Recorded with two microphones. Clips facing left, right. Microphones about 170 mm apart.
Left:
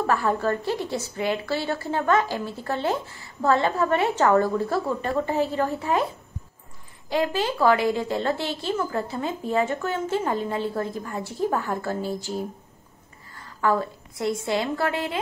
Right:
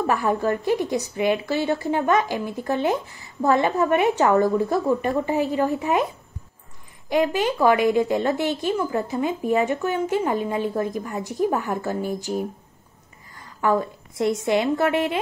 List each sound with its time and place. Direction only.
0.0 s a woman's voice: 15° right (ahead or behind)
7.1 s a woman's voice: 20° right (ahead or behind)
13.6 s a woman's voice: 20° right (ahead or behind)